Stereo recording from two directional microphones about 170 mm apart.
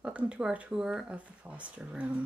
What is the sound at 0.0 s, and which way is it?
Speech, 5° right (ahead or behind).